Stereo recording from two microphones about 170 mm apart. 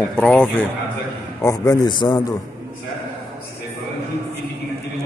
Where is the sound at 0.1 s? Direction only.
5° left (ahead or behind); by 2.2 s 25° left (ahead or behind).